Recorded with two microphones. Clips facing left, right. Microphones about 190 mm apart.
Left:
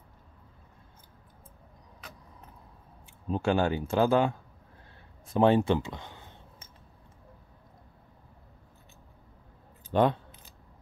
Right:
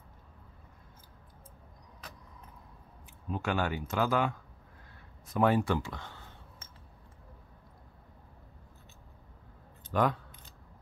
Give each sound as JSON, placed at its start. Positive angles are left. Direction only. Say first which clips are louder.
{"t": 3.3, "sound": "speech", "louder": "left 6 dB", "side_deg": 30}
{"t": 5.2, "sound": "a sound", "louder": "left 4 dB", "side_deg": 30}
{"t": 9.8, "sound": "speech", "louder": "left 4 dB", "side_deg": 25}